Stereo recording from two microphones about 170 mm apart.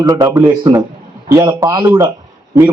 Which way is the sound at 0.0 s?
20° right (ahead or behind).